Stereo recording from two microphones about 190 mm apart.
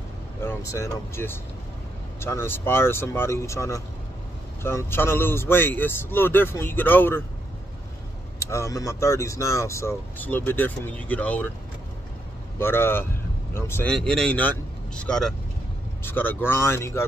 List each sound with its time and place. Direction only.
0.4 s speech: 15° left (ahead or behind)
8.4 s speech: 15° left (ahead or behind)
12.5 s speech: 10° left (ahead or behind)